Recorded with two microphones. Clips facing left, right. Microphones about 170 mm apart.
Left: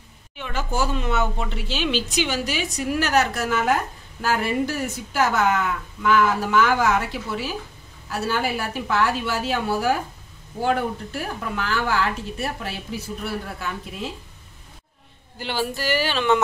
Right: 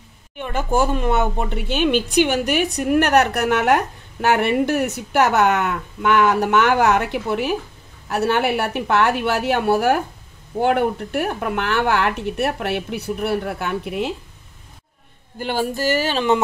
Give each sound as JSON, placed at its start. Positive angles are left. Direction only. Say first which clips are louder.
{"t": 0.4, "sound": "speech", "louder": "right 6 dB", "side_deg": -55}
{"t": 15.3, "sound": "speech", "louder": "right 4 dB", "side_deg": -50}